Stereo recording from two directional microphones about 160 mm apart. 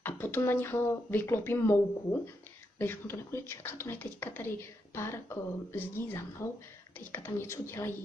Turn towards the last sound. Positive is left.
turn(degrees=15)  # may be behind; listen again after turning